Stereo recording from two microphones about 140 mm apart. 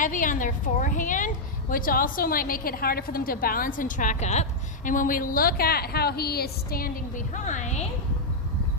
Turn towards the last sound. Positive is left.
turn(degrees=60)  # may be behind; listen again after turning